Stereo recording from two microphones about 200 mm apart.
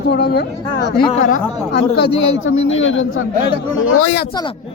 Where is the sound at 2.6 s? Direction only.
75° left (ahead or behind).